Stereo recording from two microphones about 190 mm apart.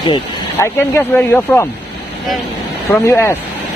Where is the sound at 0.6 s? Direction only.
10° left (ahead or behind).